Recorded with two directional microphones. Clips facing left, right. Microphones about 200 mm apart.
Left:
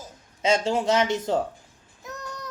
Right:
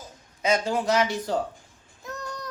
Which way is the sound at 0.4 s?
25° left (ahead or behind).